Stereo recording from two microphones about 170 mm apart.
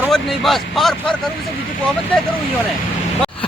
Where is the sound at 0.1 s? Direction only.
Centre (ahead or behind).